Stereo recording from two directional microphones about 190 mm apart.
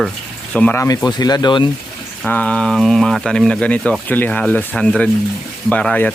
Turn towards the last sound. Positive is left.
turn(degrees=5)  # may be behind; listen again after turning